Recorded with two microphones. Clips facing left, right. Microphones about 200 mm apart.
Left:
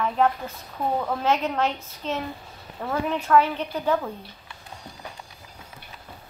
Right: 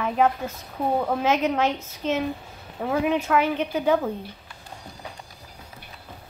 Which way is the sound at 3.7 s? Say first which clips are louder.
Right 4 dB; 75° right (ahead or behind).